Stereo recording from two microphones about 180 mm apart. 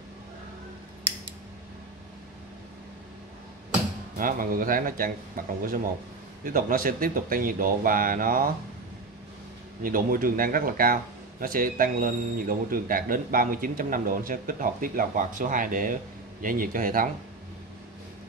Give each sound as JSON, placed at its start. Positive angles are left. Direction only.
{"t": 4.2, "sound": "speech", "side_deg": -50}
{"t": 9.8, "sound": "speech", "side_deg": -50}